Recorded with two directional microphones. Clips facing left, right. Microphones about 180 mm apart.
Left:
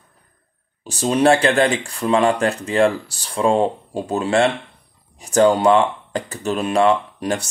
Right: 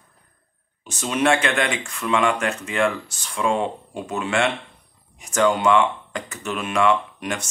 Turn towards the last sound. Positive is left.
turn(degrees=35)  # may be behind; listen again after turning